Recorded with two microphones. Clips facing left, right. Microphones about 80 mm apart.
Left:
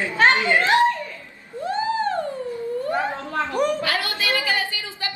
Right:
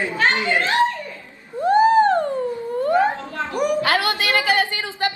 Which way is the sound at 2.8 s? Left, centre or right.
Right.